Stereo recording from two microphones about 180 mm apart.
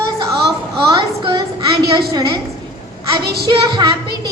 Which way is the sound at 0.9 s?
25° right (ahead or behind).